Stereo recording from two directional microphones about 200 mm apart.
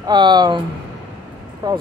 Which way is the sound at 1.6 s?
20° right (ahead or behind).